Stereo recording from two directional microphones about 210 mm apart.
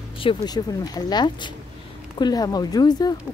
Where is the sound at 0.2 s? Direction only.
20° left (ahead or behind).